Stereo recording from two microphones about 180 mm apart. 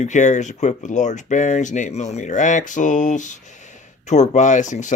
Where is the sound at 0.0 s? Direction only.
40° left (ahead or behind).